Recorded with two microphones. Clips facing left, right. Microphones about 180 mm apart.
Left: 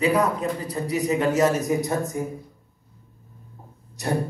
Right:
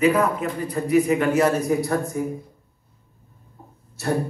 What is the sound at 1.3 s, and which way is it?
Speech, 20° left (ahead or behind).